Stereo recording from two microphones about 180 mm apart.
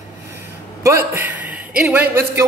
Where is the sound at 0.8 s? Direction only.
10° right (ahead or behind).